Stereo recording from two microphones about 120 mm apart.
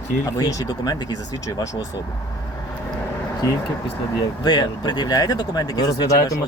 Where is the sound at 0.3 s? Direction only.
30° left (ahead or behind).